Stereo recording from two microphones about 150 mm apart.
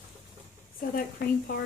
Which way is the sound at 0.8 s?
80° left.